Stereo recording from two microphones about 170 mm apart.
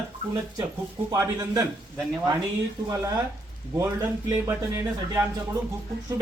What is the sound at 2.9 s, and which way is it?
Speech, 20° right (ahead or behind).